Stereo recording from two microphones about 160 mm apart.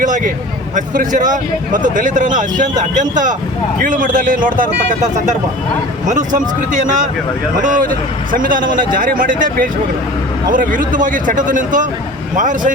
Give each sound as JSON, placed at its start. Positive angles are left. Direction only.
{"t": 0.8, "sound": "a man's voice", "side_deg": -55}